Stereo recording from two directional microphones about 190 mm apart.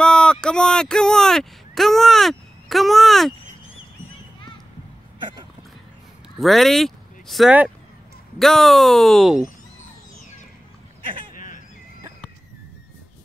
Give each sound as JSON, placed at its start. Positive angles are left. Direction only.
{"t": 0.0, "sound": "speech", "side_deg": 5}
{"t": 6.4, "sound": "speech", "side_deg": 0}
{"t": 11.3, "sound": "a sound", "side_deg": 45}